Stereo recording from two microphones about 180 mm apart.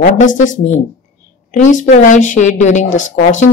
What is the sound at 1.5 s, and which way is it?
A woman's voice, 45° left (ahead or behind).